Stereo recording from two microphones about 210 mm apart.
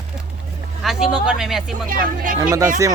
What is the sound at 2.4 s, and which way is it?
Speech, 15° right (ahead or behind).